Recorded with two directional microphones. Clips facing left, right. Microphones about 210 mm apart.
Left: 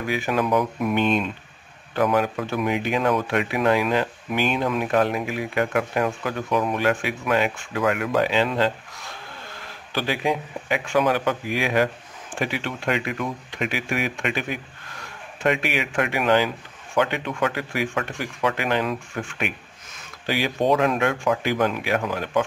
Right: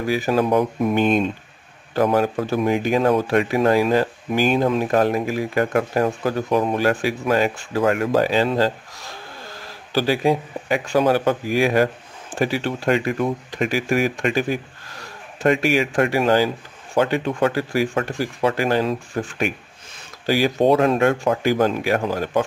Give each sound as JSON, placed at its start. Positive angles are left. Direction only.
{"t": 0.0, "sound": "speech", "side_deg": -35}
{"t": 0.9, "sound": "speech", "side_deg": -45}